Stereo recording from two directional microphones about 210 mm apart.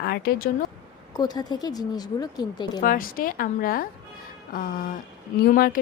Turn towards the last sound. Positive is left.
turn(degrees=45)  # may be behind; listen again after turning